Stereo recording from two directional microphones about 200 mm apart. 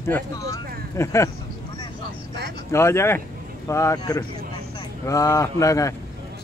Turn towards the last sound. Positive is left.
turn(degrees=15)  # may be behind; listen again after turning